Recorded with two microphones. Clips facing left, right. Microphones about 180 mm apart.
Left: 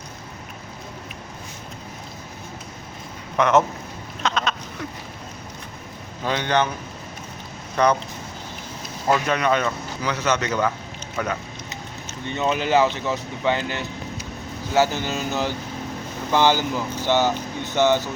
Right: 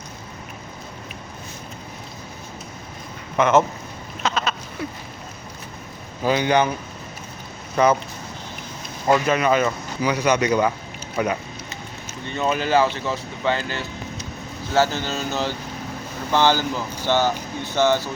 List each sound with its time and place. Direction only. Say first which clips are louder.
3.3 s speech: right 1 dB; centre (ahead or behind)
4.2 s sheep: even; 5° right (ahead or behind)
6.2 s speech: right 3 dB; 10° right (ahead or behind)
7.8 s speech: right 2 dB; 5° right (ahead or behind)
9.1 s speech: right 3 dB; 5° right (ahead or behind)
12.5 s speech: even; 20° left (ahead or behind)